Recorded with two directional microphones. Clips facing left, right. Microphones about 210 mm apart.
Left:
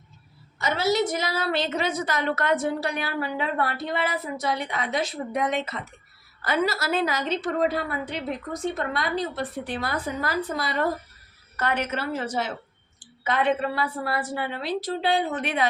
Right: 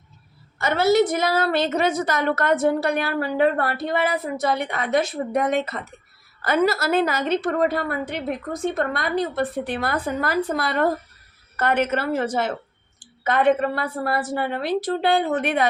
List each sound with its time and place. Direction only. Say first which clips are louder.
0.6 s a woman's voice: right 6 dB; 55° right (ahead or behind)